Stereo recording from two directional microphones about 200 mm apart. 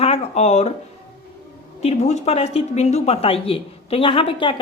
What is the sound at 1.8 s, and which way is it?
Speech, 30° left (ahead or behind).